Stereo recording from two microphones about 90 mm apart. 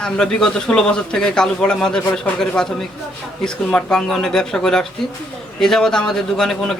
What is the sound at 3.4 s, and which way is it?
A man's voice, 10° left (ahead or behind).